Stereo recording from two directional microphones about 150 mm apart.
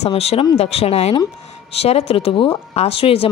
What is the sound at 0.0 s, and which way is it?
A woman's voice, 45° left (ahead or behind).